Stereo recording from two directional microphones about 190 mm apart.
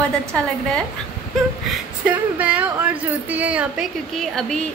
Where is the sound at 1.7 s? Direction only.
5° right (ahead or behind).